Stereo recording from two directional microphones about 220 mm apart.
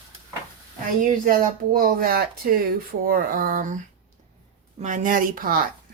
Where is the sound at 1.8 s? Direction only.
40° right (ahead or behind).